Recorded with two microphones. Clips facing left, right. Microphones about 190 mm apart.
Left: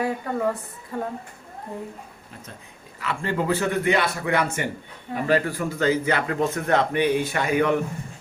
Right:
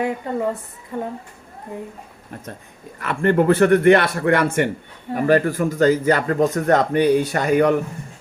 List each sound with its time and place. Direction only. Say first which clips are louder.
0.0 s a woman's voice: right 2 dB; 20° right (ahead or behind)
3.0 s a man's voice: right 8 dB; 55° right (ahead or behind)
5.1 s a man's voice: right 5 dB; 45° right (ahead or behind)